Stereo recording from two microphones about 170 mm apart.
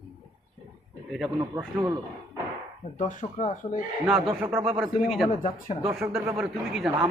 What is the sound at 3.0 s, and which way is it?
Speech, 45° left (ahead or behind).